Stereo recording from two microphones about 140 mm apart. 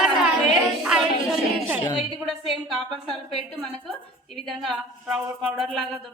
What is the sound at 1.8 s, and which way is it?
Speech, 35° left (ahead or behind).